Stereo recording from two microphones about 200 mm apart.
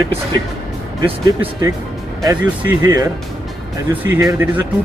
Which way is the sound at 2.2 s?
15° right (ahead or behind).